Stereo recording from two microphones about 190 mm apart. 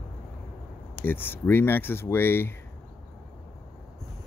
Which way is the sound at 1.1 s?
10° left (ahead or behind).